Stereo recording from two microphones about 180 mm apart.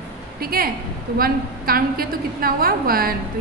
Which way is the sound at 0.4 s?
55° right (ahead or behind).